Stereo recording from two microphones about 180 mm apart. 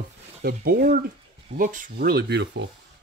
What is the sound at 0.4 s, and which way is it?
Speech, 60° right (ahead or behind).